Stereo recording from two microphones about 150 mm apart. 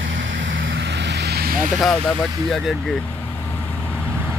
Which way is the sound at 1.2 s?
85° right.